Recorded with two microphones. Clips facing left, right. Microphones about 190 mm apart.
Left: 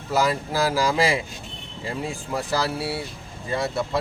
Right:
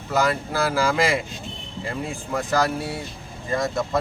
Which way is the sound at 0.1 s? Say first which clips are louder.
Even; 10° left (ahead or behind).